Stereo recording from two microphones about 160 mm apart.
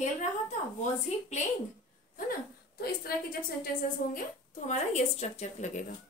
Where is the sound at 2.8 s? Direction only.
75° left (ahead or behind).